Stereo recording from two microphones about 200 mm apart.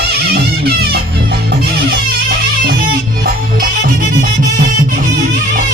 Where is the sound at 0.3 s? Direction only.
50° right (ahead or behind).